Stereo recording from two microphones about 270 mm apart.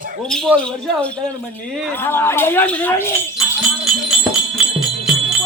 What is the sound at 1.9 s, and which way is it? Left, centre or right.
Speech, centre.